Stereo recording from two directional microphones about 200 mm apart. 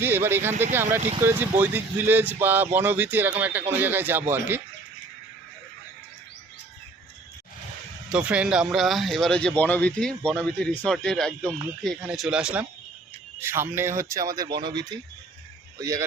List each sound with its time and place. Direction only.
0.0 s speech: 10° right (ahead or behind)
8.1 s speech: 5° right (ahead or behind)